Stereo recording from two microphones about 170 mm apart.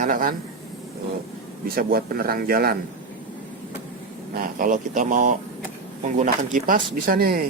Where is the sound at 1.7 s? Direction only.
60° right (ahead or behind).